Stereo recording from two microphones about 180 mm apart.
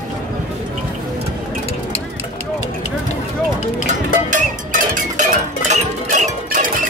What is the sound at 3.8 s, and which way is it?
Music, 40° right (ahead or behind).